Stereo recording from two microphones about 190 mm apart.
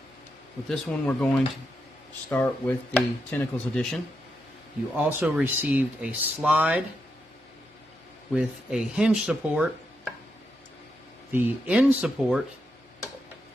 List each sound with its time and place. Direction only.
0.7 s speech: 10° left (ahead or behind)
4.9 s speech: 10° right (ahead or behind)
8.4 s speech: 5° right (ahead or behind)
11.3 s speech: 10° right (ahead or behind)